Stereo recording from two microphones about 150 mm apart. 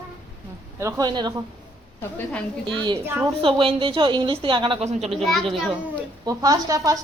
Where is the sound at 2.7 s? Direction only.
30° right (ahead or behind).